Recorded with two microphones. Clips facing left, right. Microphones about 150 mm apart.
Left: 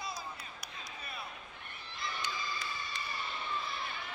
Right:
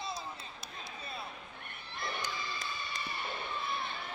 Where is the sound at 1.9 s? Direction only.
60° right (ahead or behind).